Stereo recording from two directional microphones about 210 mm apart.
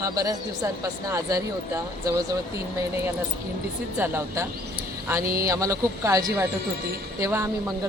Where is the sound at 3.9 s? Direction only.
10° right (ahead or behind).